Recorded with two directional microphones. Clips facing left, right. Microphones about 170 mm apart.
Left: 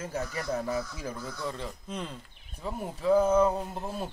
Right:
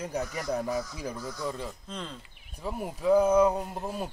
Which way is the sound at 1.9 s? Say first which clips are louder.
Left 2 dB; 10° left (ahead or behind).